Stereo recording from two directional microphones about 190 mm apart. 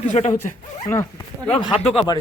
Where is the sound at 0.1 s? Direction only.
35° left (ahead or behind).